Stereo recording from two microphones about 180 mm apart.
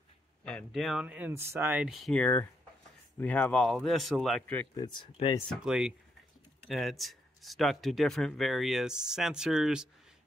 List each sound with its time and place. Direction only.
0.5 s speech: 5° left (ahead or behind)
4.7 s speech: 25° left (ahead or behind)
5.5 s speech: 5° right (ahead or behind)